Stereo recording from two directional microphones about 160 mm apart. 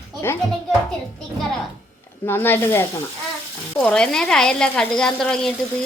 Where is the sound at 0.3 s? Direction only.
15° left (ahead or behind).